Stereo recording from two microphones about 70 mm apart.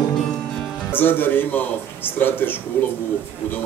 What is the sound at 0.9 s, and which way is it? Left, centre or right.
A man's voice, left.